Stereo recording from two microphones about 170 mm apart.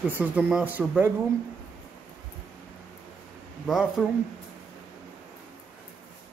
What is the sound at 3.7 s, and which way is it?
Speech, 5° right (ahead or behind).